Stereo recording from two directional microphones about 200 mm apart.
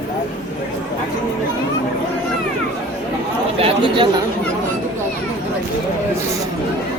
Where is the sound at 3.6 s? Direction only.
25° right (ahead or behind).